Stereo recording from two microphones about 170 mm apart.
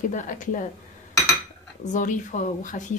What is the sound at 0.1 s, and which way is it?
Speech, 50° left (ahead or behind).